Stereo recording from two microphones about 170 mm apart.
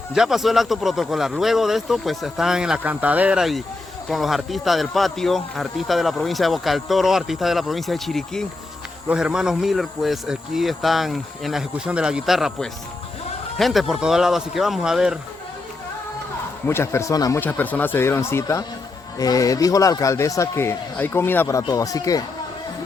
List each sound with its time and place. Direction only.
0.1 s speech: 5° right (ahead or behind)
16.6 s speech: 15° left (ahead or behind)
17.4 s speech: 10° left (ahead or behind)